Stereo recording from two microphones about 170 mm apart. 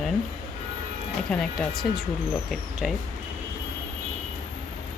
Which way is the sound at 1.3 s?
Centre (ahead or behind).